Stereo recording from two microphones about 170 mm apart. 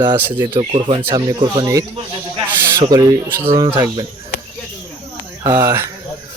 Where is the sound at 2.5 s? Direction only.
15° right (ahead or behind).